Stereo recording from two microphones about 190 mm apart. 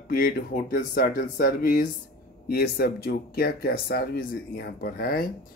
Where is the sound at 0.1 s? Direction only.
50° left (ahead or behind).